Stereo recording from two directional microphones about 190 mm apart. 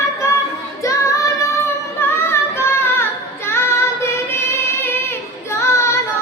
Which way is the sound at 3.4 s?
15° left (ahead or behind).